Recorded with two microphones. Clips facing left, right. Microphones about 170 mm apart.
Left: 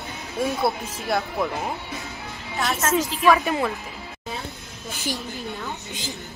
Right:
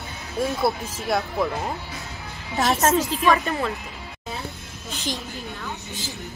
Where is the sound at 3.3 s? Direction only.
15° left (ahead or behind).